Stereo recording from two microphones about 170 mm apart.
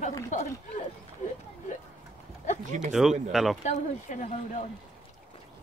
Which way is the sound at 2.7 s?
45° right (ahead or behind).